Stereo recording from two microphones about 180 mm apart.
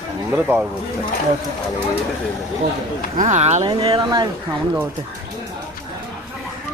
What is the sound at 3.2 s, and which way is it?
Speech, 40° right (ahead or behind).